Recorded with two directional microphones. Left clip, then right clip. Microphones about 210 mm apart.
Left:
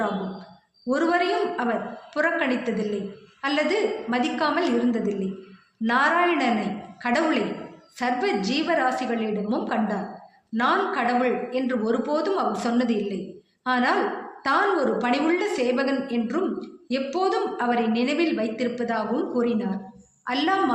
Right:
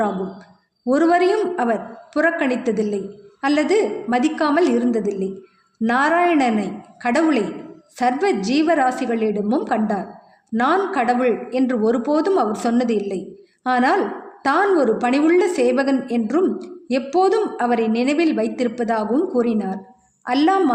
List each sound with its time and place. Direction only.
0.9 s a woman's voice: 50° right (ahead or behind)